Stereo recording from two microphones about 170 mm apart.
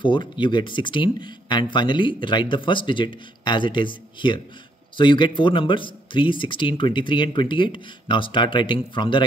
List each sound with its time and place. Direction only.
0.0 s speech: 30° left (ahead or behind)